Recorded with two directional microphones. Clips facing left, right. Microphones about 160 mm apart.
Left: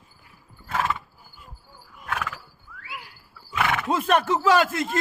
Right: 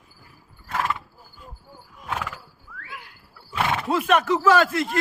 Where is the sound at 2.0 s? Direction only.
15° right (ahead or behind).